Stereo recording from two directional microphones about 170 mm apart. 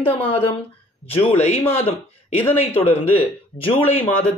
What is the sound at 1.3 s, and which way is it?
Speech, 40° left (ahead or behind).